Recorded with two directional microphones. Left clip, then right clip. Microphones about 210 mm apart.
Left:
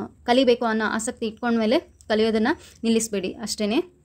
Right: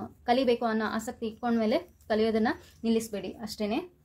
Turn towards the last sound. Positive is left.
turn(degrees=40)  # may be behind; listen again after turning